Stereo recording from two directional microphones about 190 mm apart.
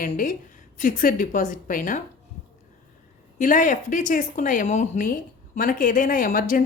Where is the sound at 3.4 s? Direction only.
45° left (ahead or behind).